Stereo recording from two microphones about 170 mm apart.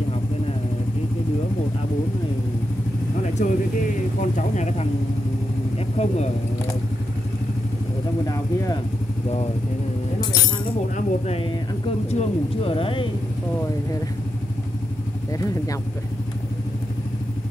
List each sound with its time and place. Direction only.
3.4 s speech: 45° left (ahead or behind)
5.9 s speech: 40° left (ahead or behind)
11.0 s speech: 35° left (ahead or behind)
15.3 s speech: 20° left (ahead or behind)